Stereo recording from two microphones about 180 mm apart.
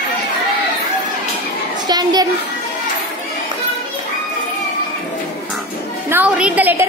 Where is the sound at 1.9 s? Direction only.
20° right (ahead or behind).